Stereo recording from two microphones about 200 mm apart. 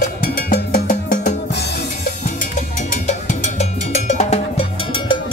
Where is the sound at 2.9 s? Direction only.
40° left (ahead or behind).